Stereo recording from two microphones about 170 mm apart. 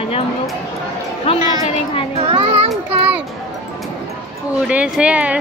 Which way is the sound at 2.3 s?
35° right (ahead or behind).